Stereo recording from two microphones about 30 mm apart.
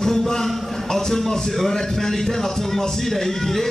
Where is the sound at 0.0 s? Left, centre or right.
Centre.